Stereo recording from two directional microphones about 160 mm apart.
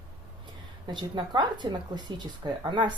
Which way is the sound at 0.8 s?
30° right (ahead or behind).